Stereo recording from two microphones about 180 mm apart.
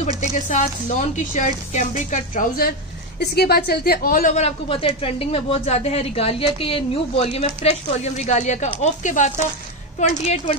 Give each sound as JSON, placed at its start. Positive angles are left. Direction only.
{"t": 0.2, "sound": "a woman's voice", "side_deg": 40}